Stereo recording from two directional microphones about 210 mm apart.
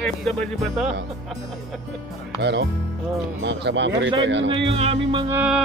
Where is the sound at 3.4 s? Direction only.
55° right (ahead or behind).